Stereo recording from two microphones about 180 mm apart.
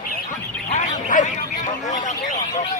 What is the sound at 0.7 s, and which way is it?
Quack, 45° left (ahead or behind).